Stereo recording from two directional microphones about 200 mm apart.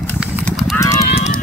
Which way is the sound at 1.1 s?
35° left (ahead or behind).